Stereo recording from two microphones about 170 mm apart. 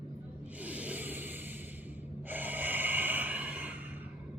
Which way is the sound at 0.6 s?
10° right (ahead or behind).